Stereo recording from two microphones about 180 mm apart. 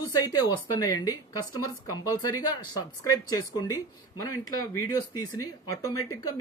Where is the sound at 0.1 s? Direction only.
20° left (ahead or behind).